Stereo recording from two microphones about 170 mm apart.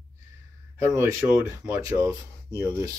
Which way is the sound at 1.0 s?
15° right (ahead or behind).